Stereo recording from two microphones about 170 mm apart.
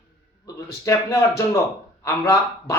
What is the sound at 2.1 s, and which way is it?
Speech, 20° left (ahead or behind).